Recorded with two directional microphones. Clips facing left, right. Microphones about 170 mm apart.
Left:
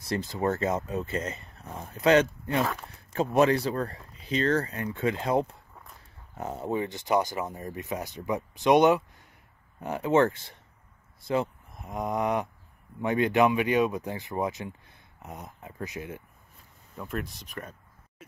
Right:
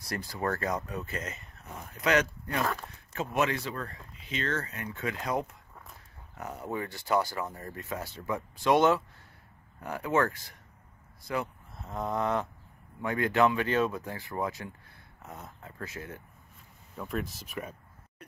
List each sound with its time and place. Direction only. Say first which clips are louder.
0.0 s speech: left 5 dB; 25° left (ahead or behind)
11.2 s vehicle: left 6 dB; 25° left (ahead or behind)
11.8 s speech: left 2 dB; 15° left (ahead or behind)
16.9 s speech: even; centre (ahead or behind)